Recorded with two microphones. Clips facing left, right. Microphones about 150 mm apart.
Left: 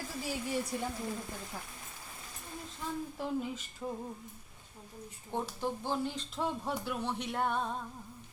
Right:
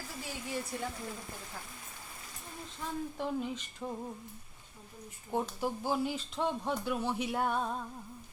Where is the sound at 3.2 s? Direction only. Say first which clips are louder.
Right 1 dB; centre (ahead or behind).